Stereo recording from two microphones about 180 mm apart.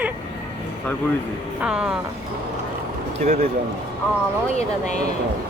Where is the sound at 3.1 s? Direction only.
35° right (ahead or behind).